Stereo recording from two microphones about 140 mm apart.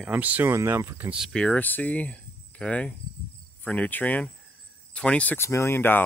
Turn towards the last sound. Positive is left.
turn(degrees=15)  # may be behind; listen again after turning